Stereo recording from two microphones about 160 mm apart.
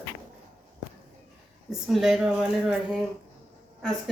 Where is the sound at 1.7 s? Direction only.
Centre (ahead or behind).